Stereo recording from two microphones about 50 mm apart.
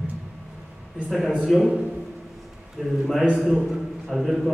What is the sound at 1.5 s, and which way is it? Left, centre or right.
Speech, centre.